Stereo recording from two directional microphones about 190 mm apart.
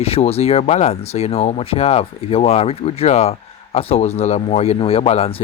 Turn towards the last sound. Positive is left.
turn(degrees=30)  # may be behind; listen again after turning